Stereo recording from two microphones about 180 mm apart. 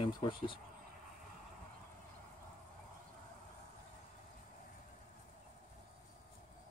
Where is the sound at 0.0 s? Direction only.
25° left (ahead or behind).